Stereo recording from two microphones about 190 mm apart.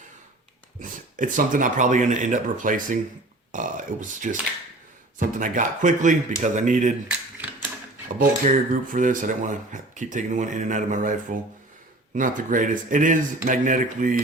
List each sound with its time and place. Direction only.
0.8 s speech: 45° right (ahead or behind)
8.2 s speech: 45° right (ahead or behind)